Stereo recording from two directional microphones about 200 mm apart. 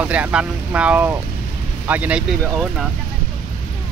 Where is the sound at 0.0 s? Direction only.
5° right (ahead or behind).